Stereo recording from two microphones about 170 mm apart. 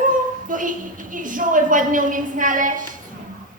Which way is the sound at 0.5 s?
50° right (ahead or behind).